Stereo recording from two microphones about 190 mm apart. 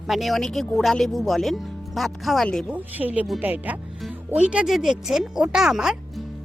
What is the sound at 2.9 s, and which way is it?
Speech, 10° right (ahead or behind).